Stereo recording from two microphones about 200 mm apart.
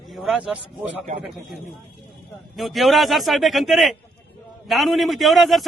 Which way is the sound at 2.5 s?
Centre (ahead or behind).